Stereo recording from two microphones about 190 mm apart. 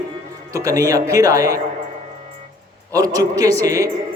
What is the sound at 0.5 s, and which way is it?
A man's voice, 15° right (ahead or behind).